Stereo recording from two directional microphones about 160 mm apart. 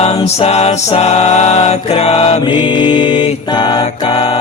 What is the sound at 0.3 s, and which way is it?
Mantra, 40° left (ahead or behind).